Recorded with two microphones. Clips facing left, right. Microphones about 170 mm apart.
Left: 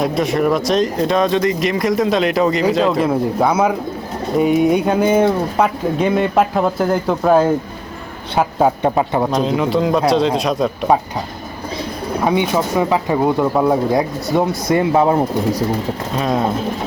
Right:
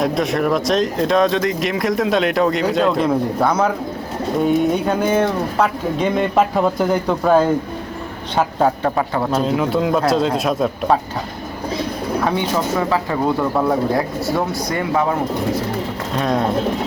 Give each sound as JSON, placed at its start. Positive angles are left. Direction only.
{"t": 0.0, "sound": "speech", "side_deg": 0}
{"t": 9.3, "sound": "speech", "side_deg": 0}
{"t": 12.2, "sound": "speech", "side_deg": 15}
{"t": 16.1, "sound": "speech", "side_deg": 0}